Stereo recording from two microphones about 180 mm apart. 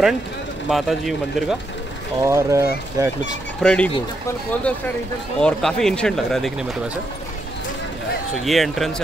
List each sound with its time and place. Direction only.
0.7 s speech: centre (ahead or behind)
2.2 s speech: 15° right (ahead or behind)
3.6 s speech: 5° left (ahead or behind)
8.5 s speech: centre (ahead or behind)